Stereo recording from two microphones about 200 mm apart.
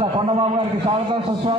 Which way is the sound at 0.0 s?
25° right (ahead or behind).